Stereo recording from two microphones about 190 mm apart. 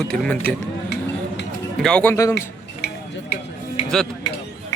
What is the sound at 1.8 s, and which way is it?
Speech, 5° left (ahead or behind).